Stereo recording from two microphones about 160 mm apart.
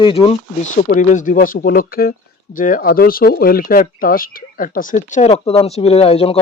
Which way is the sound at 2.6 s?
60° left (ahead or behind).